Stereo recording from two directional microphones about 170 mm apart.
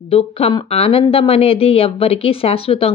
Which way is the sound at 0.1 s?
35° left (ahead or behind).